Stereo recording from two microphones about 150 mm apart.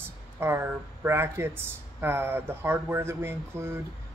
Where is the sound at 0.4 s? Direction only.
15° right (ahead or behind).